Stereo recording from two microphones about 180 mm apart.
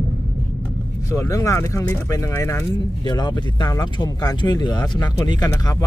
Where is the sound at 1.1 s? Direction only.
15° left (ahead or behind).